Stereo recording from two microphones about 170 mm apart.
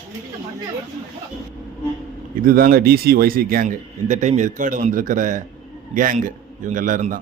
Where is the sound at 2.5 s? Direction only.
60° right (ahead or behind).